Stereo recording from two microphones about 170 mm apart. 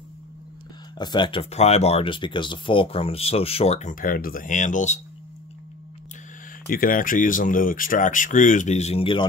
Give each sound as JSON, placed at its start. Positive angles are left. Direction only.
{"t": 0.9, "sound": "speech", "side_deg": 25}
{"t": 6.7, "sound": "speech", "side_deg": 55}